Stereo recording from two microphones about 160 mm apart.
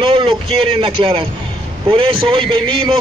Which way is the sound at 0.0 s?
35° right (ahead or behind).